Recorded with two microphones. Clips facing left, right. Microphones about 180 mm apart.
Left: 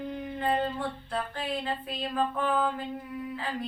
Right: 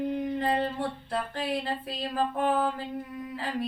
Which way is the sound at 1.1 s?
35° right (ahead or behind).